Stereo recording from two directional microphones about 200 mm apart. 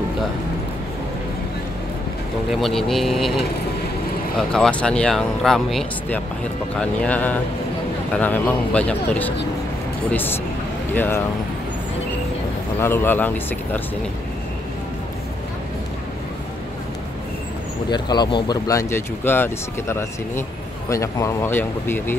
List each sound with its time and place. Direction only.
2.5 s speech: centre (ahead or behind)
12.8 s speech: 10° left (ahead or behind)
17.8 s speech: 20° left (ahead or behind)